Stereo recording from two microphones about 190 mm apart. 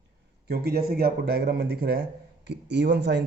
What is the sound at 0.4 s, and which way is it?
A man's voice, 55° right (ahead or behind).